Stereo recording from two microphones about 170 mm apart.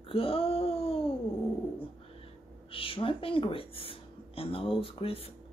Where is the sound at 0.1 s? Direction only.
35° left (ahead or behind).